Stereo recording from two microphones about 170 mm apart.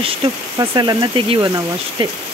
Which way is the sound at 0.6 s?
25° right (ahead or behind).